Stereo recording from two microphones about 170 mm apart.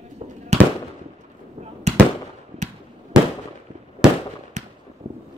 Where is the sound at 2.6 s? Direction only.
45° right (ahead or behind).